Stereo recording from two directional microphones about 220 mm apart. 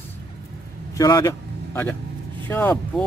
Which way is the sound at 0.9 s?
15° left (ahead or behind).